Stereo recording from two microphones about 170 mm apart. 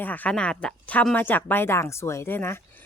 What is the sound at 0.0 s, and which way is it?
A woman's voice, 10° left (ahead or behind).